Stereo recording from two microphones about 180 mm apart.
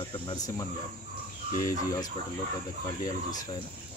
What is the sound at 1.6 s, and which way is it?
Speech, 20° left (ahead or behind).